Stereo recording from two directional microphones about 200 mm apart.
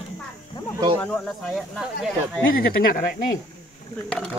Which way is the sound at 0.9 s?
5° left (ahead or behind).